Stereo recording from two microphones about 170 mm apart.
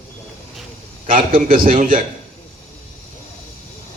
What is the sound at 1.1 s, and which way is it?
Speech, 55° right (ahead or behind).